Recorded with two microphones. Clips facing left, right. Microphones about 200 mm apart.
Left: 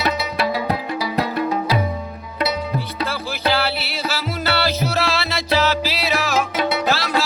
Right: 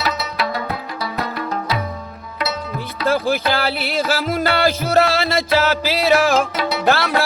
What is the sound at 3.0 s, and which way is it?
Music, 50° right (ahead or behind).